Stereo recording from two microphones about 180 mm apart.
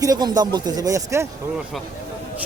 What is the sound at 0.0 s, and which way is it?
Speech, 20° right (ahead or behind).